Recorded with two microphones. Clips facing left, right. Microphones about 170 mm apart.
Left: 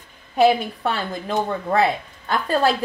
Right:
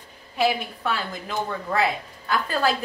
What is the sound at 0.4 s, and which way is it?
Speech, 35° left (ahead or behind).